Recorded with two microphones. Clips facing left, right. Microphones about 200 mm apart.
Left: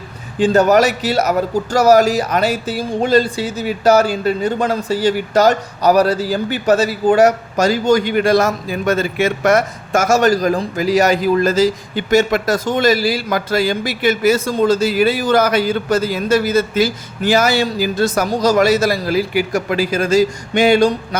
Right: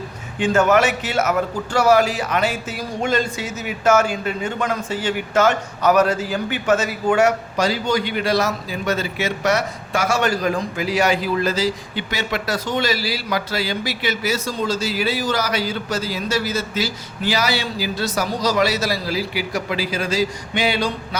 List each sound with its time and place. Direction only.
0.3 s speech: 35° left (ahead or behind)